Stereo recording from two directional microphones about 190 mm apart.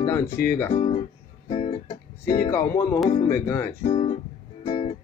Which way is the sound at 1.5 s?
30° left (ahead or behind).